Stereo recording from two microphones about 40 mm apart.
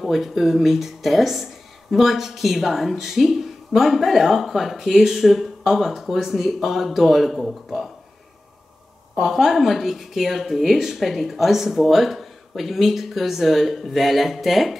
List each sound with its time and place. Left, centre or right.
0.0 s speech: centre
9.2 s speech: centre